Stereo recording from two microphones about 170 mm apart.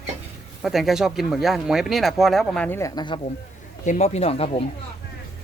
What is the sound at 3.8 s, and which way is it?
Speech, 40° left (ahead or behind).